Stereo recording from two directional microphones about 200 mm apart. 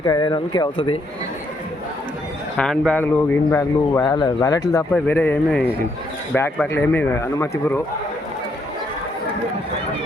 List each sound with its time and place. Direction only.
0.0 s speech: 20° left (ahead or behind)
2.6 s speech: 5° left (ahead or behind)